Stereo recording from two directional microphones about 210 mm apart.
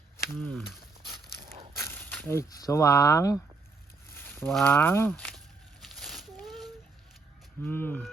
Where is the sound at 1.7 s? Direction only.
10° left (ahead or behind).